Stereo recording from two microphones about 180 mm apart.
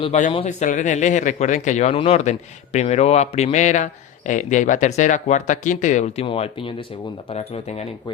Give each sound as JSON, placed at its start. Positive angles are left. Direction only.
{"t": 0.0, "sound": "speech", "side_deg": 40}